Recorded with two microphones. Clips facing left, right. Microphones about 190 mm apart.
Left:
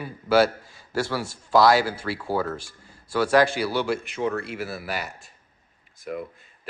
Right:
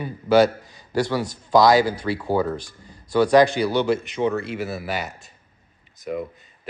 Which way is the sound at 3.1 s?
5° left (ahead or behind).